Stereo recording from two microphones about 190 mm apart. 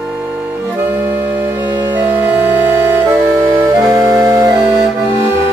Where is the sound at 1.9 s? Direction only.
10° right (ahead or behind).